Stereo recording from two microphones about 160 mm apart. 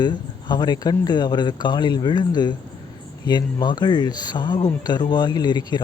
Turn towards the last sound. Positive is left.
turn(degrees=25)  # may be behind; listen again after turning